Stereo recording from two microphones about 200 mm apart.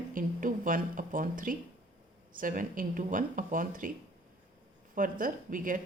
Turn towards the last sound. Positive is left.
turn(degrees=-40)  # may be behind; listen again after turning